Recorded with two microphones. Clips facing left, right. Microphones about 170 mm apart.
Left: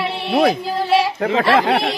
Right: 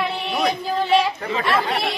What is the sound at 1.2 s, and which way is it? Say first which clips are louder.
Speech: left 6 dB; 70° left (ahead or behind).